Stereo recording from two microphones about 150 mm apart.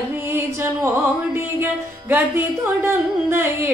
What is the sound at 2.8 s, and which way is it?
Speech, 15° right (ahead or behind).